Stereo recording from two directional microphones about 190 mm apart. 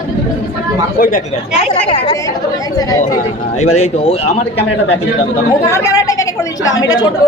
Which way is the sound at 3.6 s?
35° left (ahead or behind).